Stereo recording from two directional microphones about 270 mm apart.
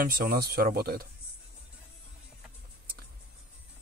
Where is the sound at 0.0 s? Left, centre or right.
Right.